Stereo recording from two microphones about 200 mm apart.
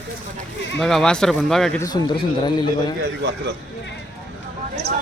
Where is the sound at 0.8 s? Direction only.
Centre (ahead or behind).